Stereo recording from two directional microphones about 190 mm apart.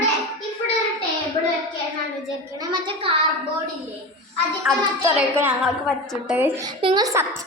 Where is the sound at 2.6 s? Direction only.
30° right (ahead or behind).